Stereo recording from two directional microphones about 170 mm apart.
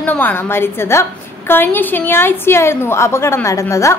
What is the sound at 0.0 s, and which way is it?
A woman's voice, 10° left (ahead or behind).